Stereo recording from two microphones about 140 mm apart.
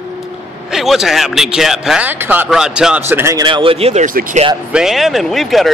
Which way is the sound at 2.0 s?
15° right (ahead or behind).